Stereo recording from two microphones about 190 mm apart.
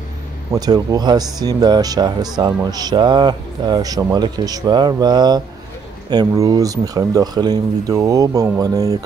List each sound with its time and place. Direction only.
0.5 s speech: 20° right (ahead or behind)